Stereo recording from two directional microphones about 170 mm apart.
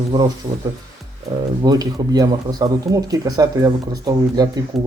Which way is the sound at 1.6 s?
20° right (ahead or behind).